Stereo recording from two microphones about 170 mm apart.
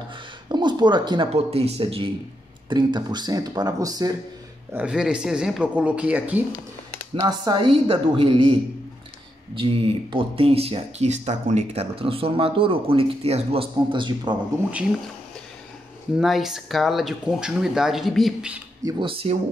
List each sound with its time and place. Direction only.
0.5 s speech: 25° right (ahead or behind)
4.7 s speech: 5° right (ahead or behind)
7.2 s speech: 25° right (ahead or behind)
10.1 s speech: 35° right (ahead or behind)
16.2 s speech: centre (ahead or behind)
18.9 s speech: 30° right (ahead or behind)